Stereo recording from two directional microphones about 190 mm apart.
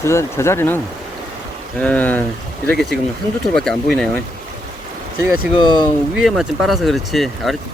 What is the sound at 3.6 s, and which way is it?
Speech, 5° left (ahead or behind).